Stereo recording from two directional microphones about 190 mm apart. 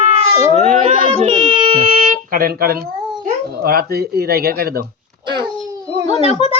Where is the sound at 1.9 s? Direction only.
45° right (ahead or behind).